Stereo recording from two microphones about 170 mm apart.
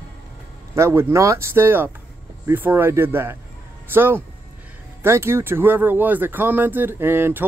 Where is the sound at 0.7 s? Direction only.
15° right (ahead or behind).